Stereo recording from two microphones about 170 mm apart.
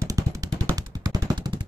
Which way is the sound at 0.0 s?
20° right (ahead or behind).